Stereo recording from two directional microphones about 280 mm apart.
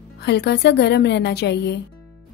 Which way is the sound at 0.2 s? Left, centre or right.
Left.